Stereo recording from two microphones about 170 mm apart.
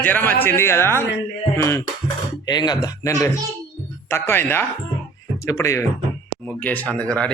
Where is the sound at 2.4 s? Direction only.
25° left (ahead or behind).